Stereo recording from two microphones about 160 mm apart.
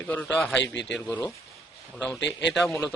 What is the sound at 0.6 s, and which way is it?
Speech, 90° left.